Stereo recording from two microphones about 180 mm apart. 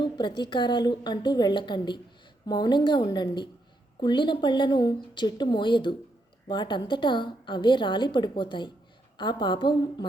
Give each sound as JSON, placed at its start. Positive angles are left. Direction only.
{"t": 0.0, "sound": "a woman's voice", "side_deg": 25}